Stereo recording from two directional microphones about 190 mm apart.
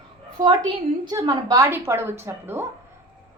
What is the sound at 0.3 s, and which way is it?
A woman's voice, 20° right (ahead or behind).